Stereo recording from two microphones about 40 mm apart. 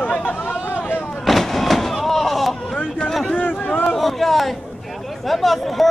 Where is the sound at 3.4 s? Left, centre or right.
Left.